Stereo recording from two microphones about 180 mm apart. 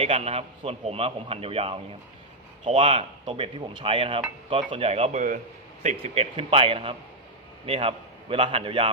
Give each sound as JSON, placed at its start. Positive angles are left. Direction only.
{"t": 0.0, "sound": "speech", "side_deg": -35}